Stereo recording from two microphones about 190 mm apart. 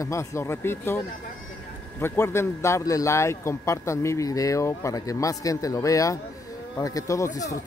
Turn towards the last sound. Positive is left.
turn(degrees=15)  # may be behind; listen again after turning